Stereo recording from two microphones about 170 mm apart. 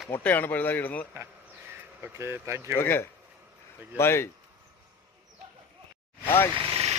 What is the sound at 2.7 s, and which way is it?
Speech, 10° left (ahead or behind).